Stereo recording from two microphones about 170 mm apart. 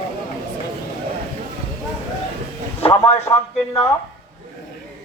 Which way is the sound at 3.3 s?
15° left (ahead or behind).